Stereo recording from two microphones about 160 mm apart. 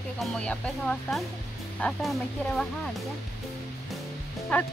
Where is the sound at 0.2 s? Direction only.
5° left (ahead or behind).